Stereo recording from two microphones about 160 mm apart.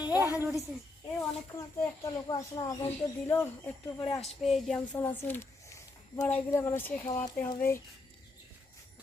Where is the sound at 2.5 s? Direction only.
30° left (ahead or behind).